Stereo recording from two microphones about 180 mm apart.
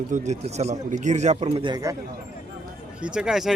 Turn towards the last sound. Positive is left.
turn(degrees=-5)  # may be behind; listen again after turning